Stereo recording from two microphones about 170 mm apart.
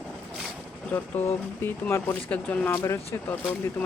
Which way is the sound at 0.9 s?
10° left (ahead or behind).